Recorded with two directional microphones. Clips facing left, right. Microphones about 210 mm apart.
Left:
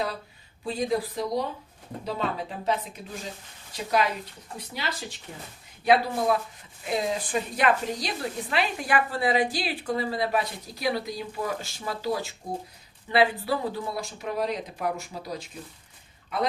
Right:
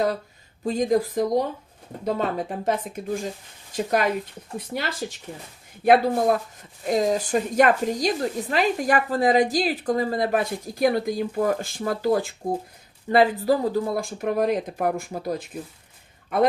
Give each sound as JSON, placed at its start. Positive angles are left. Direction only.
{"t": 0.6, "sound": "a woman's voice", "side_deg": -45}